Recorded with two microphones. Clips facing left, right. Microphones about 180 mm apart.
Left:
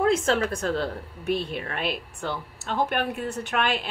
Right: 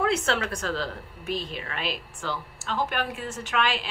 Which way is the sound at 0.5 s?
55° left (ahead or behind).